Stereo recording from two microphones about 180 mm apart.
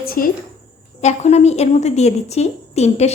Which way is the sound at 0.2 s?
50° left (ahead or behind).